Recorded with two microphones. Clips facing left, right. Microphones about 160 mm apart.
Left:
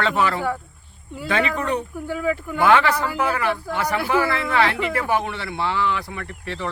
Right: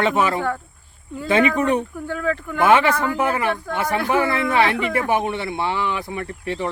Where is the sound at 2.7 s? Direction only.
20° right (ahead or behind).